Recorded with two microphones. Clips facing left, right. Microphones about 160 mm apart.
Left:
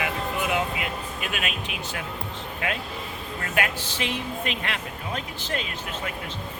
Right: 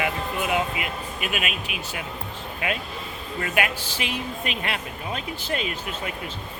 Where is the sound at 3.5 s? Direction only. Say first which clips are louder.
Even; 15° right (ahead or behind).